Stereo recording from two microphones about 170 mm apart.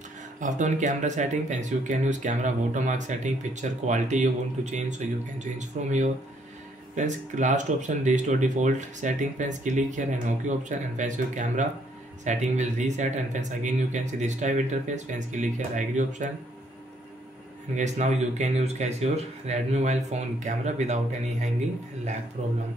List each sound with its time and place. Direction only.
0.4 s speech: 45° right (ahead or behind)
17.7 s speech: 45° right (ahead or behind)